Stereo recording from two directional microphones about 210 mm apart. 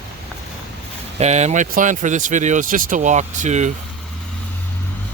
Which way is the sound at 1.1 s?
30° right (ahead or behind).